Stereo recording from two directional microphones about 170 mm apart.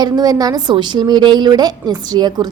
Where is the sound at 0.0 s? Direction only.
20° right (ahead or behind).